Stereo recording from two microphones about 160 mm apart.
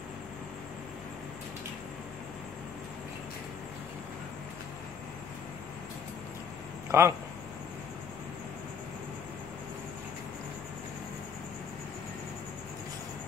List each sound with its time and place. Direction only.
6.9 s speech: 15° right (ahead or behind)